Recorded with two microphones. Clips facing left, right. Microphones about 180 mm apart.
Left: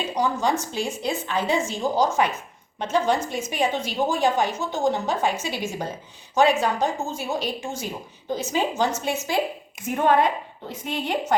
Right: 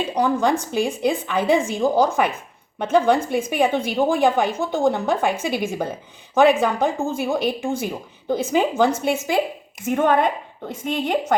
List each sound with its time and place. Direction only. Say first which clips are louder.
0.1 s a woman's voice: right 4 dB; 55° right (ahead or behind)